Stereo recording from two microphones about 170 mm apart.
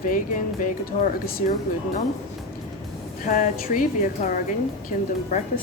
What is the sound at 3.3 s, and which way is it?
Speech, 50° left (ahead or behind).